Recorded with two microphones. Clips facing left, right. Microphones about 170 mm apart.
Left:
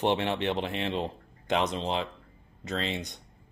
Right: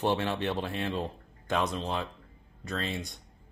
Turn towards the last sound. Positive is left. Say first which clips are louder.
# left 2 dB
turn(degrees=20)  # may be behind; listen again after turning